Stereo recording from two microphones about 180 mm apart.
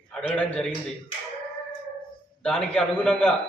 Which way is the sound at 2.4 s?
5° left (ahead or behind).